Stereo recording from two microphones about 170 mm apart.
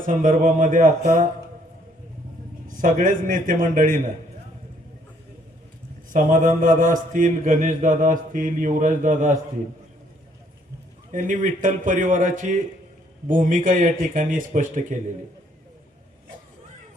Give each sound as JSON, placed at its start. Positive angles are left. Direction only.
{"t": 0.0, "sound": "a man's voice", "side_deg": -50}
{"t": 2.6, "sound": "a man's voice", "side_deg": -50}
{"t": 6.1, "sound": "a man's voice", "side_deg": -50}
{"t": 11.1, "sound": "a man's voice", "side_deg": -50}